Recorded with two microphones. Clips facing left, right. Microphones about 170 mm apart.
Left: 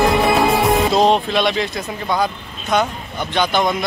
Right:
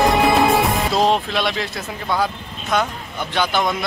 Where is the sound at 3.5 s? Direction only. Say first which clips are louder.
Left 3 dB; 20° left (ahead or behind).